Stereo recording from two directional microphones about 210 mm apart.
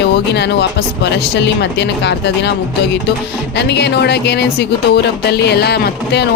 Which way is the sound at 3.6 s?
50° left (ahead or behind).